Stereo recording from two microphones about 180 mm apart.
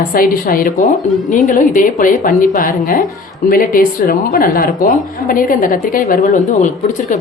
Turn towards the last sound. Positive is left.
turn(degrees=45)  # may be behind; listen again after turning